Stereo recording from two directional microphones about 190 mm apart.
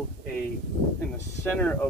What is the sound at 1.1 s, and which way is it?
Speech, 10° left (ahead or behind).